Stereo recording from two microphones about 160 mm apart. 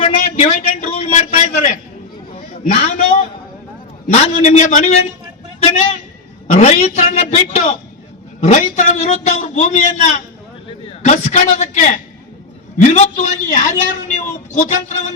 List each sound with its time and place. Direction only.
0.0 s a sound: 50° left (ahead or behind)
4.0 s a man's voice: 45° left (ahead or behind)
6.5 s a man's voice: 45° left (ahead or behind)